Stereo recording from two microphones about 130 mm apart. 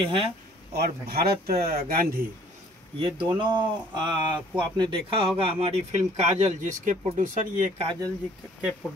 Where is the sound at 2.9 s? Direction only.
40° right (ahead or behind); by 7.6 s 80° right.